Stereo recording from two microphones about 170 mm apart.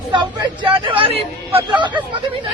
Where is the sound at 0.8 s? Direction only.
30° right (ahead or behind).